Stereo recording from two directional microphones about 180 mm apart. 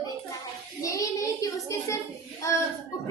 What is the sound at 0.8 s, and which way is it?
A child's voice, 20° left (ahead or behind).